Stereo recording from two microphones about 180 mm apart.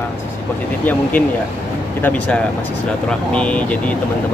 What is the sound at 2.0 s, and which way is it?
Speech, 5° left (ahead or behind).